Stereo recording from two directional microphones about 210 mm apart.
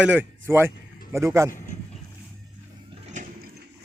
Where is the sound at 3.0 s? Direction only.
35° right (ahead or behind).